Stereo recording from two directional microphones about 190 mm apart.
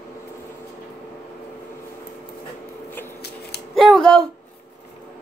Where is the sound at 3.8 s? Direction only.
Centre (ahead or behind).